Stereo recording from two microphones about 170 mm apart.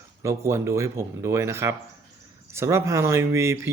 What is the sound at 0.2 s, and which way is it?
Speech, 15° right (ahead or behind).